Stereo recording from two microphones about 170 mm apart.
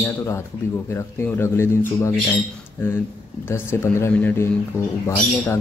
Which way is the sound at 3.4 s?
15° left (ahead or behind).